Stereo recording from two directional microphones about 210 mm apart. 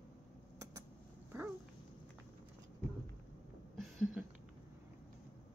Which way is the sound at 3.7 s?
Centre (ahead or behind).